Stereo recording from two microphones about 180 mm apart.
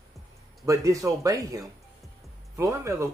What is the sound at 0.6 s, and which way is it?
Speech, 15° right (ahead or behind).